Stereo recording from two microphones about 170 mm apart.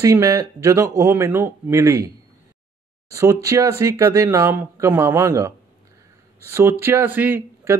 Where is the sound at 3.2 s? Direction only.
20° right (ahead or behind).